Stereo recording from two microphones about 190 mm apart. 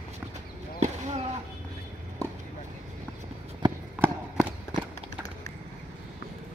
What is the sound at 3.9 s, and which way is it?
Run, 10° right (ahead or behind).